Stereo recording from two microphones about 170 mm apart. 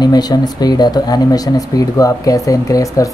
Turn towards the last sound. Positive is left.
turn(degrees=20)  # may be behind; listen again after turning